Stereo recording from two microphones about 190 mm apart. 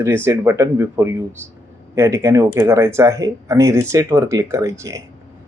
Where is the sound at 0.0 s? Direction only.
15° right (ahead or behind).